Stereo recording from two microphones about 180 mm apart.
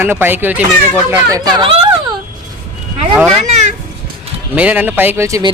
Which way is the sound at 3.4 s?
40° right (ahead or behind).